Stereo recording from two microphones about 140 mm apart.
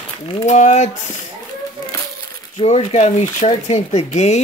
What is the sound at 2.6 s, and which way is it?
Speech, 45° left (ahead or behind).